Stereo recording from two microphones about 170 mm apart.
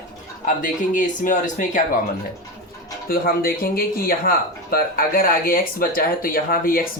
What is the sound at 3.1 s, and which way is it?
Speech, 60° left (ahead or behind).